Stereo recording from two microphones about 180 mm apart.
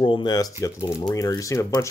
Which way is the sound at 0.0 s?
25° left (ahead or behind).